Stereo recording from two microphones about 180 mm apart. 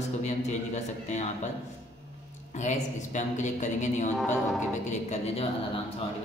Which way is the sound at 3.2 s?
40° left (ahead or behind).